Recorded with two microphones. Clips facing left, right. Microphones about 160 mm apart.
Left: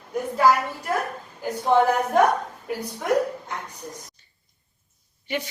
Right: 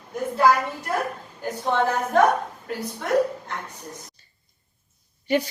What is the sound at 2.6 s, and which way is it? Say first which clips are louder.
Speech: left 3 dB; 10° left (ahead or behind).